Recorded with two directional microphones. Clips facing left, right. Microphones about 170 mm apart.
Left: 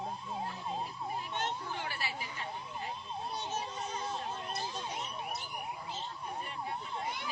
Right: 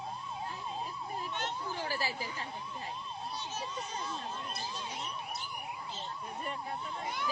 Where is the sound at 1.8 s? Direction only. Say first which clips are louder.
Right 4 dB; 35° right (ahead or behind).